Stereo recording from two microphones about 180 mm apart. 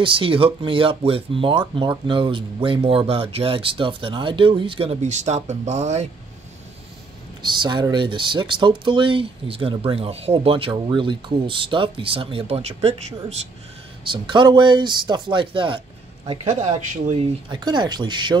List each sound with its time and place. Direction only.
0.0 s speech: 30° right (ahead or behind)
7.4 s speech: 25° right (ahead or behind)
16.4 s speech: 40° right (ahead or behind)
17.5 s speech: 25° right (ahead or behind)